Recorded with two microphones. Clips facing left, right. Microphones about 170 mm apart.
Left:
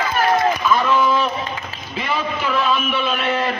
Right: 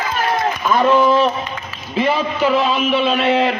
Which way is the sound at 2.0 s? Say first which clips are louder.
Right 6 dB; 35° right (ahead or behind).